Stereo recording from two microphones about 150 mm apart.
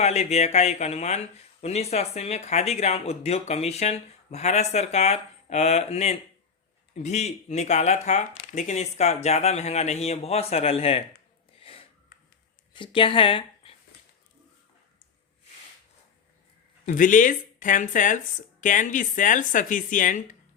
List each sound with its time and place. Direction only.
0.0 s speech: 45° left (ahead or behind)
11.6 s a sound: 40° left (ahead or behind)
12.7 s speech: 35° left (ahead or behind)
16.8 s speech: 60° left (ahead or behind)